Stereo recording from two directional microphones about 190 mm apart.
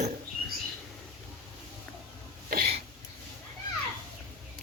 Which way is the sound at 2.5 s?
55° right (ahead or behind).